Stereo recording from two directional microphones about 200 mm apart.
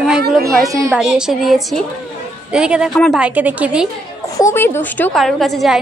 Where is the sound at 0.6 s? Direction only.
15° right (ahead or behind).